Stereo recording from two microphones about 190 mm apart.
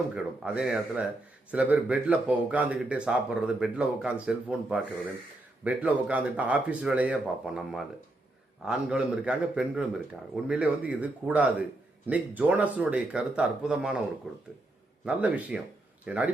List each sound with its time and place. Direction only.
0.1 s a man's voice: 5° right (ahead or behind)